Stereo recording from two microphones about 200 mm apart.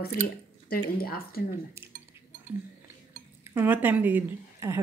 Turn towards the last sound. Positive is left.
turn(degrees=-10)  # may be behind; listen again after turning